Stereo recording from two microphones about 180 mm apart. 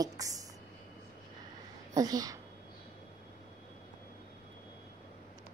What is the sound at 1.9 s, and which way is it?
Speech, 20° right (ahead or behind).